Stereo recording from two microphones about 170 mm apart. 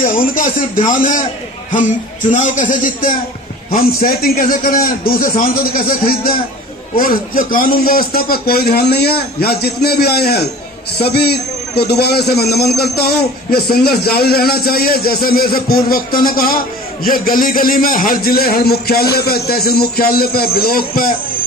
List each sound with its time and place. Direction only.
0.3 s a man's voice: 50° left (ahead or behind)